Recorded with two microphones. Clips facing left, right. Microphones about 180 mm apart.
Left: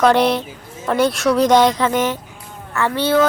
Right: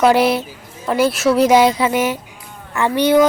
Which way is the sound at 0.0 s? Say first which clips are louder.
Right 1 dB; 5° right (ahead or behind).